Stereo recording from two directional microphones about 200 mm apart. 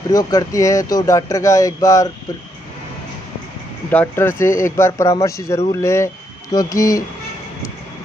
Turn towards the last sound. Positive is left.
turn(degrees=15)  # may be behind; listen again after turning